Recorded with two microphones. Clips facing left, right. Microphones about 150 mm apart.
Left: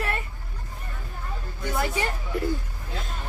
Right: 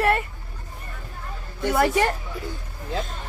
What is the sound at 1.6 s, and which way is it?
Speech, 70° right (ahead or behind).